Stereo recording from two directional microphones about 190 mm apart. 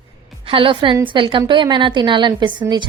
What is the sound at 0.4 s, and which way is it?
A woman's voice, 30° right (ahead or behind).